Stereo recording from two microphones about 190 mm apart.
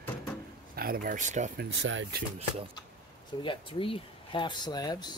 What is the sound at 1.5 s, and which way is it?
Speech, 75° right (ahead or behind).